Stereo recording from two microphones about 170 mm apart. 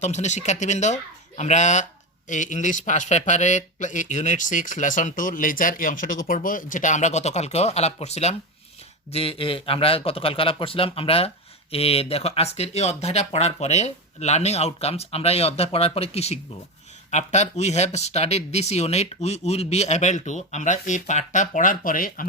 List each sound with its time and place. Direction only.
0.0 s speech: 40° left (ahead or behind)